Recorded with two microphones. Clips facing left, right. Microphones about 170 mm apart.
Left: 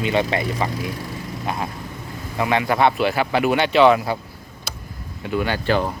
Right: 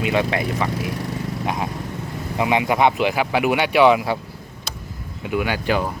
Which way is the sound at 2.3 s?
15° right (ahead or behind).